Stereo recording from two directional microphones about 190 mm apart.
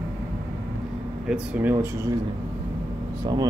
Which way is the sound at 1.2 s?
5° right (ahead or behind).